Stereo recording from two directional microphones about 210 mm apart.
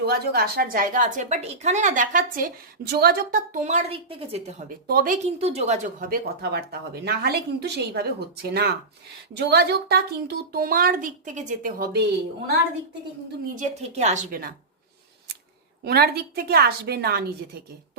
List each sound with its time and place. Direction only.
0.0 s a woman's voice: 45° right (ahead or behind); by 4.5 s 30° right (ahead or behind)
4.9 s a woman's voice: 40° right (ahead or behind)
13.6 s a woman's voice: 30° right (ahead or behind)
15.8 s a woman's voice: 50° right (ahead or behind)